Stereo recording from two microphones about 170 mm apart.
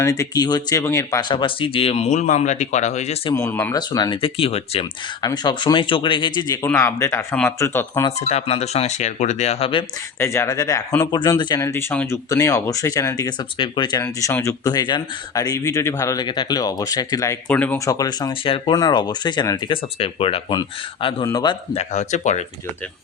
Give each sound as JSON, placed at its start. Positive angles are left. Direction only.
{"t": 0.0, "sound": "speech", "side_deg": 20}
{"t": 3.3, "sound": "speech", "side_deg": 15}
{"t": 5.2, "sound": "speech", "side_deg": 25}
{"t": 8.2, "sound": "speech", "side_deg": 40}
{"t": 10.2, "sound": "speech", "side_deg": 15}
{"t": 14.0, "sound": "speech", "side_deg": 15}
{"t": 17.5, "sound": "speech", "side_deg": 10}
{"t": 21.8, "sound": "speech", "side_deg": 45}